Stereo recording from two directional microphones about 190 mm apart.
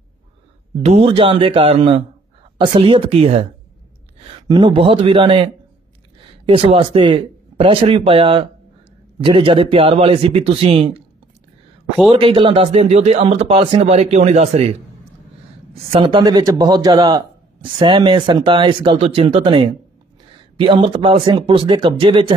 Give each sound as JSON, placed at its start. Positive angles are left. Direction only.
{"t": 0.8, "sound": "speech", "side_deg": -30}
{"t": 4.5, "sound": "speech", "side_deg": -20}
{"t": 12.1, "sound": "speech", "side_deg": -30}
{"t": 15.9, "sound": "speech", "side_deg": -25}